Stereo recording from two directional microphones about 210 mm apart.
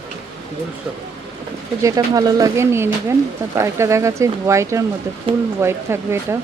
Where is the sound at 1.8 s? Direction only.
15° right (ahead or behind).